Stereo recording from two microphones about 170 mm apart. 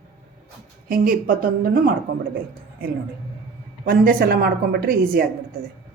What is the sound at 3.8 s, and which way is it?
A woman's voice, 60° right (ahead or behind).